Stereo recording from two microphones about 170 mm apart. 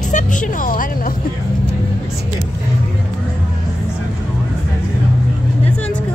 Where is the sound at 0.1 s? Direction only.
50° left (ahead or behind).